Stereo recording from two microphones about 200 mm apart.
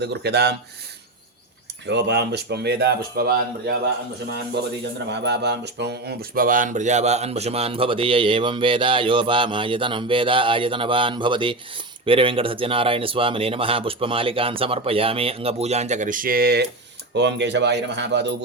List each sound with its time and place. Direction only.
0.0 s speech: 55° right (ahead or behind)
1.9 s speech: 60° right (ahead or behind)
5.0 s speech: 60° right (ahead or behind)